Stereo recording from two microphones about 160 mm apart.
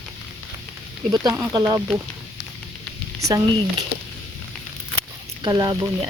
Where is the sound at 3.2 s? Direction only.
20° right (ahead or behind).